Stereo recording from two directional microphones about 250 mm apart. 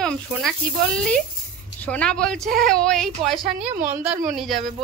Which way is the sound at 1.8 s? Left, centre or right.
Centre.